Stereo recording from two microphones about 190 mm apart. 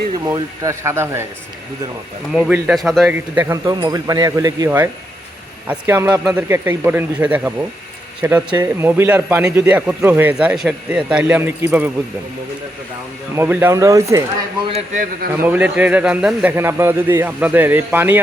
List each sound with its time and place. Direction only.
0.3 s a man's voice: 20° right (ahead or behind)
2.3 s a man's voice: 5° right (ahead or behind)
13.3 s a man's voice: 10° right (ahead or behind)
14.7 s a man's voice: 35° right (ahead or behind)
15.4 s a man's voice: 10° right (ahead or behind)